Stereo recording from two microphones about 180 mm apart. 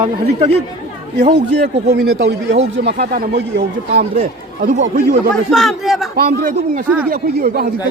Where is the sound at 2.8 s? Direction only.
60° right (ahead or behind).